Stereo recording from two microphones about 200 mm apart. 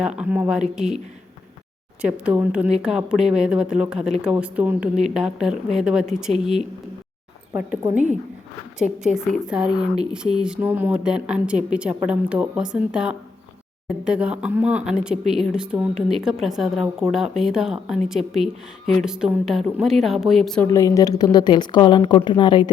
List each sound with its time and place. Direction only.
0.0 s speech: 5° right (ahead or behind)
2.0 s speech: 5° right (ahead or behind)
9.1 s speech: 5° right (ahead or behind)
20.7 s a woman's voice: 15° left (ahead or behind)